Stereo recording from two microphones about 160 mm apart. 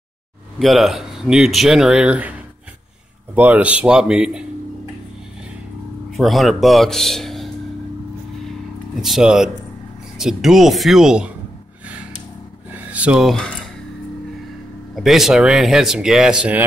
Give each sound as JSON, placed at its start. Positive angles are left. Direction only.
{"t": 0.6, "sound": "speech", "side_deg": 0}
{"t": 3.3, "sound": "speech", "side_deg": -10}
{"t": 6.1, "sound": "speech", "side_deg": 0}
{"t": 9.0, "sound": "speech", "side_deg": 0}
{"t": 12.9, "sound": "speech", "side_deg": -5}
{"t": 15.0, "sound": "speech", "side_deg": 0}